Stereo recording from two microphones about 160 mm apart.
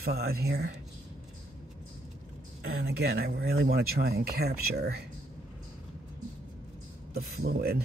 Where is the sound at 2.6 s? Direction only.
90° right.